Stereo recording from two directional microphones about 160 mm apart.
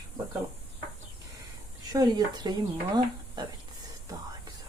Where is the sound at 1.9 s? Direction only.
25° right (ahead or behind).